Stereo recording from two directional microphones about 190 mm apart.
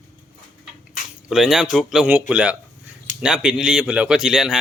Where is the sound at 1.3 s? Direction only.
Centre (ahead or behind).